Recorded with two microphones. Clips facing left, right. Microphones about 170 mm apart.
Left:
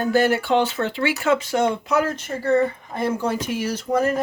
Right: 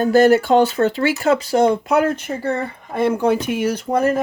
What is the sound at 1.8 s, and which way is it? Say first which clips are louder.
Speech: right 4 dB; 60° right (ahead or behind).